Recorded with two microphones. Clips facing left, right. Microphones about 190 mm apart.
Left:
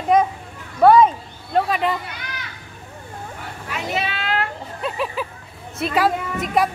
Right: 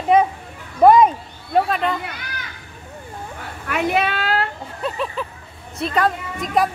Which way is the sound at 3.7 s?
60° right (ahead or behind).